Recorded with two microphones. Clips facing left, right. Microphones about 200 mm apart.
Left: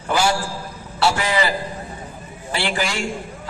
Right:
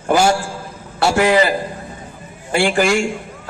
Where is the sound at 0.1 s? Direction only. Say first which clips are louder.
Right 5 dB; 50° right (ahead or behind).